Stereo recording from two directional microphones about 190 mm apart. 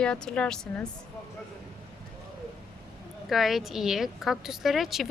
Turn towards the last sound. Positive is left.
turn(degrees=0)  # may be behind; listen again after turning